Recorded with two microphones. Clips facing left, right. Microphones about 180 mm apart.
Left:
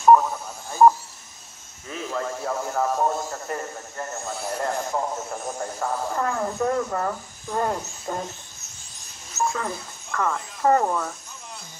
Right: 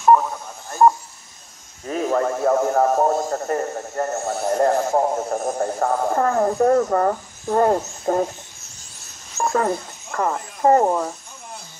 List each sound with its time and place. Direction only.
0.0 s radio: centre (ahead or behind)
1.9 s a man's voice: 50° right (ahead or behind)
9.4 s telephone dialing: 55° right (ahead or behind)
10.1 s speech: 35° right (ahead or behind)